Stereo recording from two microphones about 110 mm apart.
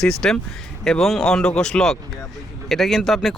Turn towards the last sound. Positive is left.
turn(degrees=0)  # may be behind; listen again after turning